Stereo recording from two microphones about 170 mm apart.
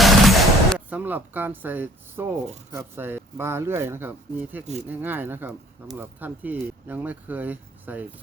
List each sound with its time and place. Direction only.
0.0 s gunshot: centre (ahead or behind)
0.9 s speech: 10° right (ahead or behind)